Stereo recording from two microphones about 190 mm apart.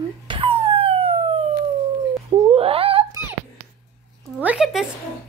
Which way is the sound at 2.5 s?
30° right (ahead or behind).